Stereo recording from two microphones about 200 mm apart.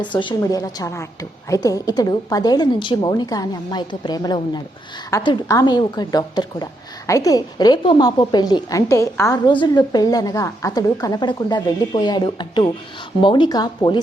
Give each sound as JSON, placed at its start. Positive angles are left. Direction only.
{"t": 0.2, "sound": "a woman's voice", "side_deg": 20}